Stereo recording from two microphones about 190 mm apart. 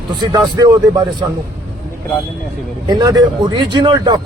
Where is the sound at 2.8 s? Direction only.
20° right (ahead or behind).